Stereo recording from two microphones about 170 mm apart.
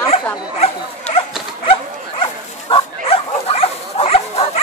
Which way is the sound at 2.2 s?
30° left (ahead or behind).